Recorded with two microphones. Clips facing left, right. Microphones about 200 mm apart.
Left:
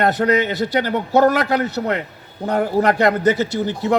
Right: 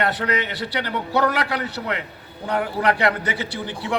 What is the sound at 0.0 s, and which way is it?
A man's voice, 45° left (ahead or behind).